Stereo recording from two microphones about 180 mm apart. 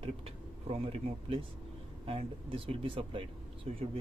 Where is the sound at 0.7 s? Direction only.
35° right (ahead or behind).